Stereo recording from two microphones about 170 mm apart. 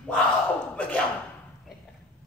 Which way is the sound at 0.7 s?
10° left (ahead or behind).